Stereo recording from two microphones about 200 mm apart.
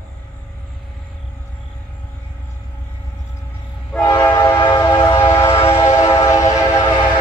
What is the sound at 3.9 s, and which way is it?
Train, 15° left (ahead or behind).